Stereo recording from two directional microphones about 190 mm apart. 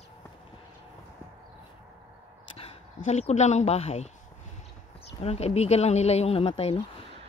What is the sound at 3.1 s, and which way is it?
Speech, 35° left (ahead or behind).